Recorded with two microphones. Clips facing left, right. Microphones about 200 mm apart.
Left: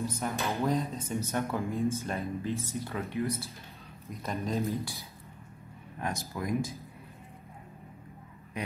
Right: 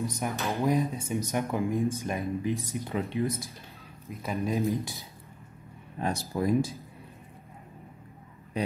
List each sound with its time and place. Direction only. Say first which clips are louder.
0.0 s speech: right 1 dB; 15° right (ahead or behind)
5.9 s speech: right 6 dB; 30° right (ahead or behind)